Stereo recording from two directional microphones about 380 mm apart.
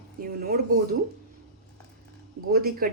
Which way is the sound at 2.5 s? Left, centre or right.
Right.